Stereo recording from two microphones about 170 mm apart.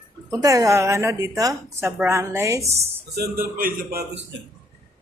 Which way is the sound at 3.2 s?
60° right (ahead or behind).